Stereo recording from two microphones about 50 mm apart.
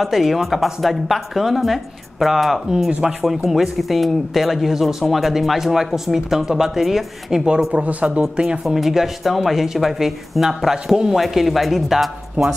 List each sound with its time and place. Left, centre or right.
0.0 s speech: centre
7.4 s speech: right
8.2 s speech: centre
8.6 s speech: centre